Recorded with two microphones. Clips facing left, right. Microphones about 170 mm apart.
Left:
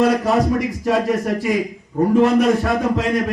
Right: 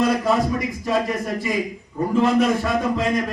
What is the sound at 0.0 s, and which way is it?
A man's voice, 65° left (ahead or behind).